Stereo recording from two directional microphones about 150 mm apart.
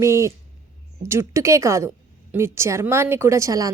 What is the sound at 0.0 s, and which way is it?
A woman's voice, 20° right (ahead or behind).